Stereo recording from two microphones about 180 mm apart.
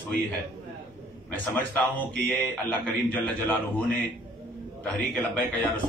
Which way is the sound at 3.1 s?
10° left (ahead or behind).